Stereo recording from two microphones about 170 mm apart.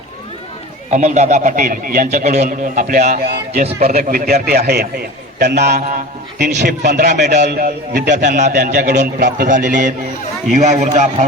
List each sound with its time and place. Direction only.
0.9 s speech: 45° right (ahead or behind)
2.2 s speech: 40° right (ahead or behind)
3.6 s a man's voice: 40° right (ahead or behind)
3.8 s a man's voice: 65° right (ahead or behind)
6.8 s speech: 50° right (ahead or behind)
7.4 s speech: 70° right (ahead or behind)
8.4 s speech: 50° right (ahead or behind)
8.7 s speech: 70° right (ahead or behind)
9.1 s speech: 60° right (ahead or behind); by 11.3 s 45° right (ahead or behind)